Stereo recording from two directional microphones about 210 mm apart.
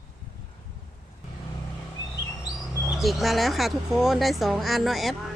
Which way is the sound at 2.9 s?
Centre (ahead or behind).